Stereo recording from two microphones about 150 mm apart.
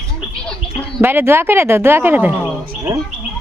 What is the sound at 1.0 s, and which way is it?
A woman's voice, 15° right (ahead or behind).